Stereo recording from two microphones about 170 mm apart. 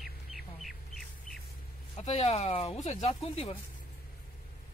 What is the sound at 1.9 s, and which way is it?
Speech, 35° left (ahead or behind).